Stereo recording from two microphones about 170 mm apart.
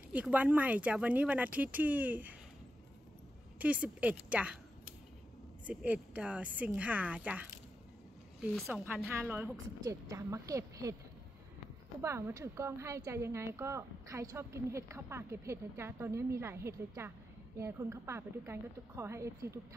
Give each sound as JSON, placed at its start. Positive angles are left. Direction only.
{"t": 0.1, "sound": "a woman's voice", "side_deg": -10}
{"t": 3.5, "sound": "a woman's voice", "side_deg": -10}
{"t": 5.7, "sound": "a woman's voice", "side_deg": -10}
{"t": 8.6, "sound": "a woman's voice", "side_deg": -10}
{"t": 12.0, "sound": "a woman's voice", "side_deg": -15}